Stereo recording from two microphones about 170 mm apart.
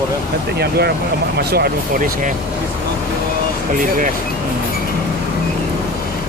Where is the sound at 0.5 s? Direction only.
70° right (ahead or behind).